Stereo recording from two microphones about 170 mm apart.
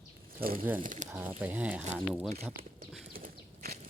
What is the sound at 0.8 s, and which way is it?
Speech, 50° right (ahead or behind).